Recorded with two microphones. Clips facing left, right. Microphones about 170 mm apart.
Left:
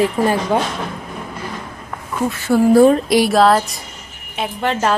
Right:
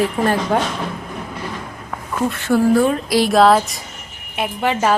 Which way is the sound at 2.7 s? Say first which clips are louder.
Left 8 dB; 35° left (ahead or behind).